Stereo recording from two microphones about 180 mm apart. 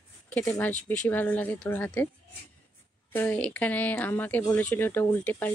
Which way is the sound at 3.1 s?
10° left (ahead or behind).